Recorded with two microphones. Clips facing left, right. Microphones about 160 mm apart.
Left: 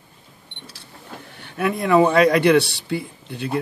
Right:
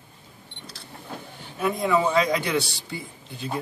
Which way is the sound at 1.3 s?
65° left (ahead or behind).